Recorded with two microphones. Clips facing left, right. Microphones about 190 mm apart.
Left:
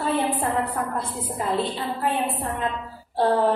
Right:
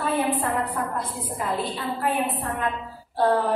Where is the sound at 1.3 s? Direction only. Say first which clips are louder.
Left 3 dB; 30° left (ahead or behind).